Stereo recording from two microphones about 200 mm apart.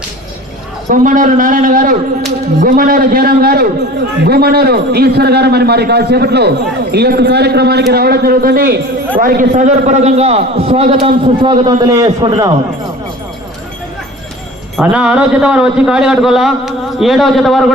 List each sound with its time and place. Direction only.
0.9 s a man's voice: 40° right (ahead or behind); by 12.5 s 15° right (ahead or behind)
14.8 s a man's voice: 5° right (ahead or behind)